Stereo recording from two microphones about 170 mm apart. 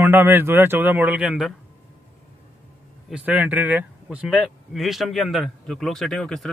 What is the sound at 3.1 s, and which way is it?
Speech, 10° right (ahead or behind).